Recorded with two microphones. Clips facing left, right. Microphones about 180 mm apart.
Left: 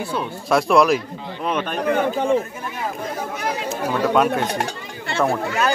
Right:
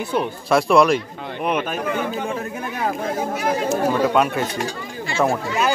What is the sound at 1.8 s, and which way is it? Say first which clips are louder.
Speech: left 4 dB; 60° left (ahead or behind).